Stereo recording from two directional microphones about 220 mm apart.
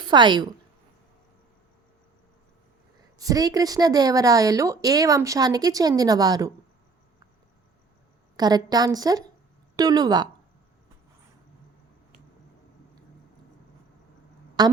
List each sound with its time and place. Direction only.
0.0 s a woman's voice: 20° right (ahead or behind)
3.2 s a woman's voice: 15° right (ahead or behind)
8.4 s a woman's voice: 20° right (ahead or behind)
14.6 s a woman's voice: 20° right (ahead or behind)